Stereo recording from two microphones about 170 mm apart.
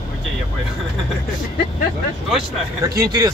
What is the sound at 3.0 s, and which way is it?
Speech, 20° right (ahead or behind).